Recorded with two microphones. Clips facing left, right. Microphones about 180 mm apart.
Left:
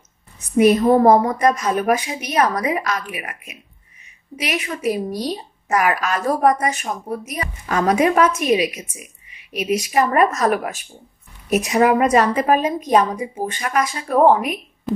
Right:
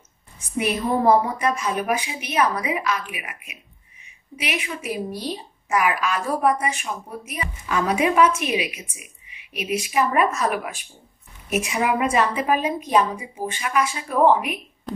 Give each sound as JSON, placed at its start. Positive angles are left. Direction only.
{"t": 0.6, "sound": "a woman's voice", "side_deg": 40}
{"t": 14.9, "sound": "speech", "side_deg": 5}